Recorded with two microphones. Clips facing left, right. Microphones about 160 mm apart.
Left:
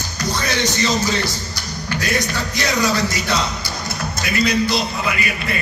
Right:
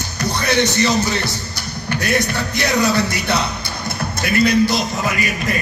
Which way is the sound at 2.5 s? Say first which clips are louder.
Right 3 dB; 60° right (ahead or behind).